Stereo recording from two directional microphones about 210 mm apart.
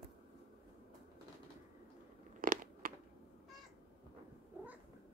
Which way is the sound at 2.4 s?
40° right (ahead or behind).